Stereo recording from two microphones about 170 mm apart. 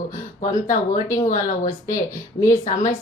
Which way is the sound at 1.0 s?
20° left (ahead or behind).